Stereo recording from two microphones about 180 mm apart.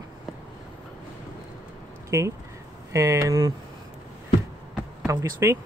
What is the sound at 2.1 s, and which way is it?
Speech, 15° right (ahead or behind).